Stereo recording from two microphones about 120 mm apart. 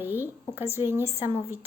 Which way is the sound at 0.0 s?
15° right (ahead or behind).